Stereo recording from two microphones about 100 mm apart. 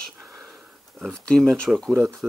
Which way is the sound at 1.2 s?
10° left (ahead or behind).